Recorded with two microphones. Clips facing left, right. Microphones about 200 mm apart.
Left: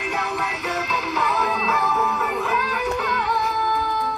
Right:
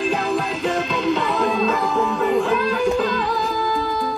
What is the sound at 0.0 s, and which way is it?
Music, 30° right (ahead or behind).